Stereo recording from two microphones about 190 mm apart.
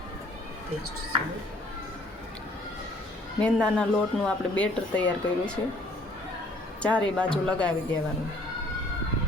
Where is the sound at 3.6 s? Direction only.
5° left (ahead or behind).